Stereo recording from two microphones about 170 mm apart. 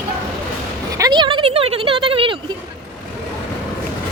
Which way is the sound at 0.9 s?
25° right (ahead or behind).